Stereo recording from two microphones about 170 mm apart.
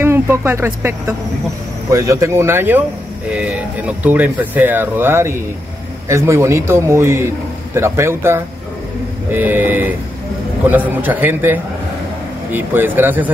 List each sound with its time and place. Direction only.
0.0 s speech: 15° right (ahead or behind)